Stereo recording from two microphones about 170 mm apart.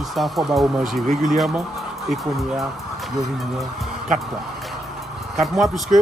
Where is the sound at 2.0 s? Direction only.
Centre (ahead or behind).